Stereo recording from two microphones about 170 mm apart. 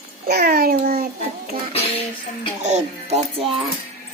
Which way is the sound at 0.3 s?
65° right (ahead or behind).